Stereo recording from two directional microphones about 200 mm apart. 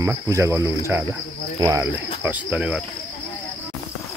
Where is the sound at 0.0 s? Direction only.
15° right (ahead or behind).